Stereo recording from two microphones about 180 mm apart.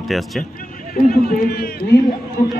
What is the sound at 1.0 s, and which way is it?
Speech, 55° left (ahead or behind).